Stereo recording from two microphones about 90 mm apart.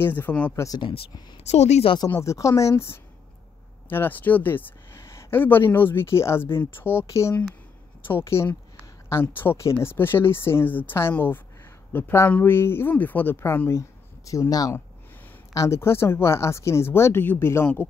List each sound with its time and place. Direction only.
0.0 s speech: 20° left (ahead or behind)
0.7 s speech: 75° left (ahead or behind)
2.0 s speech: 25° left (ahead or behind)
2.3 s speech: 35° left (ahead or behind)
13.7 s speech: 35° left (ahead or behind)